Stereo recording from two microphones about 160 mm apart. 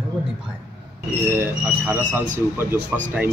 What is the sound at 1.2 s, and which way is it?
Speech, 15° right (ahead or behind).